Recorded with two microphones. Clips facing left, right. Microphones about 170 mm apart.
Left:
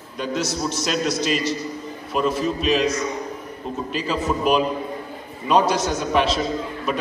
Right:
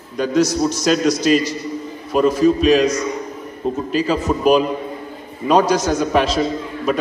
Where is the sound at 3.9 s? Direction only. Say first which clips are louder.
Right 4 dB; 40° right (ahead or behind).